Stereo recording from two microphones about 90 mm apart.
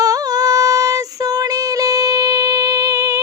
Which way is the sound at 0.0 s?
40° right (ahead or behind).